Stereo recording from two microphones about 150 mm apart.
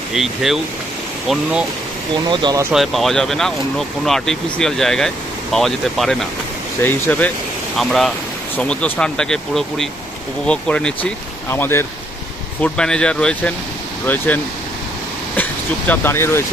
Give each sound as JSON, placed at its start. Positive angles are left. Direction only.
{"t": 0.1, "sound": "speech", "side_deg": 0}
{"t": 2.4, "sound": "speech", "side_deg": -20}
{"t": 2.7, "sound": "speech", "side_deg": 0}
{"t": 8.5, "sound": "speech", "side_deg": 10}
{"t": 15.9, "sound": "speech", "side_deg": 15}